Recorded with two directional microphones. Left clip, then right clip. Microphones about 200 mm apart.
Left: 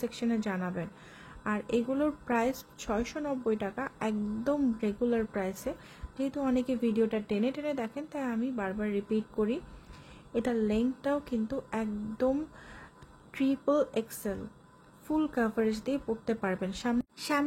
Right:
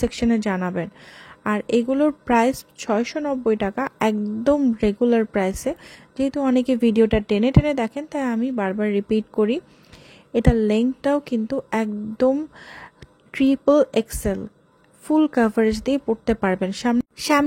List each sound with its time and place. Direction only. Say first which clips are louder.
0.0 s a woman's voice: right 11 dB; 40° right (ahead or behind)